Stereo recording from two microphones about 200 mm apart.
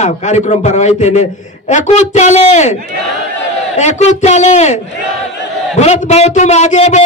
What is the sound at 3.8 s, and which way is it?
A man's voice, 35° left (ahead or behind).